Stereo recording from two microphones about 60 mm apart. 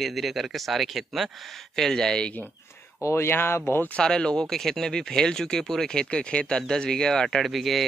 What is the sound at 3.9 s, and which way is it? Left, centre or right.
Speech, centre.